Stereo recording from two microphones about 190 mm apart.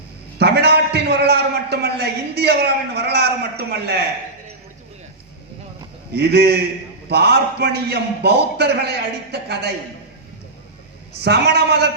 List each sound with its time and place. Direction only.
0.3 s a sound: 60° right (ahead or behind)
6.1 s a man's voice: 60° right (ahead or behind)
11.2 s a man's voice: 60° right (ahead or behind)